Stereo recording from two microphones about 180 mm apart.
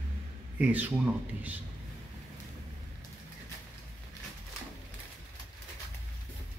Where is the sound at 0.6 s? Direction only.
10° right (ahead or behind).